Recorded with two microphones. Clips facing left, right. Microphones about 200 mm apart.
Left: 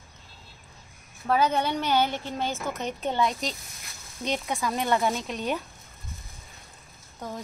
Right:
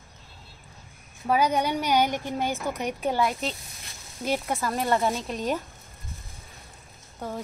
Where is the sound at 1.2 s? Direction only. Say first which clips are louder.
Right 1 dB; 10° right (ahead or behind).